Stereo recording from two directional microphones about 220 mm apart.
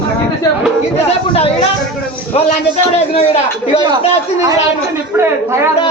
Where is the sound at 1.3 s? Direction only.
25° left (ahead or behind).